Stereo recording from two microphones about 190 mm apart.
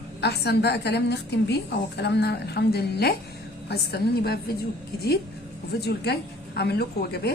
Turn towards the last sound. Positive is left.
turn(degrees=55)  # may be behind; listen again after turning